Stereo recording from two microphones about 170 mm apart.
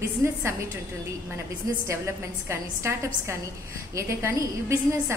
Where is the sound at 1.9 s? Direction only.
15° right (ahead or behind).